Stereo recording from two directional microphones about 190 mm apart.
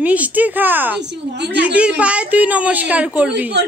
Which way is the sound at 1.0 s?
65° right (ahead or behind).